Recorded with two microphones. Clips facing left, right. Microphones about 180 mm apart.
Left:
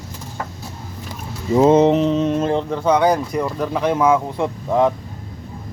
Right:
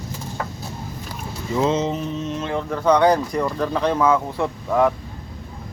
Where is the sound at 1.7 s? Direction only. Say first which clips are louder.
Left 9 dB; 65° left (ahead or behind); by 2.3 s 80° left.